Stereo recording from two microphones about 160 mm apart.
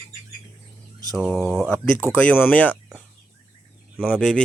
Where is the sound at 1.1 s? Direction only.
Centre (ahead or behind).